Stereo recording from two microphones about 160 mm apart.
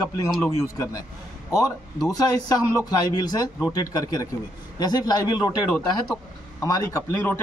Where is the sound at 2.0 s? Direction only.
25° left (ahead or behind).